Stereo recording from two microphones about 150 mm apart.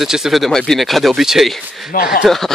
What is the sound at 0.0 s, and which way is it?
Speech, centre (ahead or behind).